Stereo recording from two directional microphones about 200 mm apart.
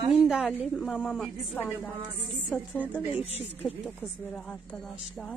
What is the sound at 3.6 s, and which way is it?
Speech, 5° left (ahead or behind).